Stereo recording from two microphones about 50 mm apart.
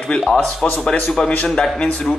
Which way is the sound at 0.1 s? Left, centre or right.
Centre.